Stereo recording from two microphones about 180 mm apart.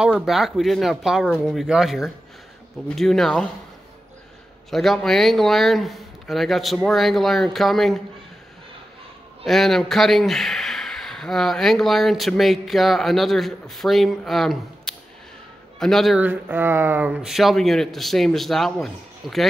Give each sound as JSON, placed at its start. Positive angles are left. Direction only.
{"t": 0.0, "sound": "speech", "side_deg": -5}
{"t": 4.6, "sound": "speech", "side_deg": 0}
{"t": 9.5, "sound": "speech", "side_deg": 0}
{"t": 16.3, "sound": "speech", "side_deg": -10}